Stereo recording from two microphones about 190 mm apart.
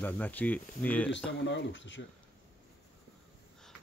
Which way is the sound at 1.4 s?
75° left (ahead or behind).